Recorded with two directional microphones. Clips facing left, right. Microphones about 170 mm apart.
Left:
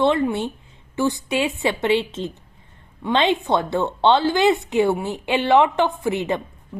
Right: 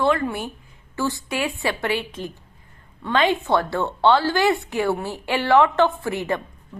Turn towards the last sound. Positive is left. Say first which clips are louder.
# left 2 dB
turn(degrees=20)  # may be behind; listen again after turning